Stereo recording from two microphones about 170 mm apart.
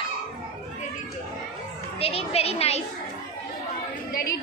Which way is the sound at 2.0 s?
35° left (ahead or behind).